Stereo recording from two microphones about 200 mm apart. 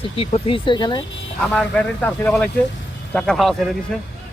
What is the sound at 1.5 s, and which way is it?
Speech, 5° left (ahead or behind).